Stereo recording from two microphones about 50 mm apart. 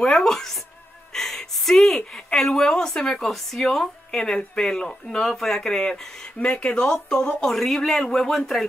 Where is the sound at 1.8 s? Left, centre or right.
Centre.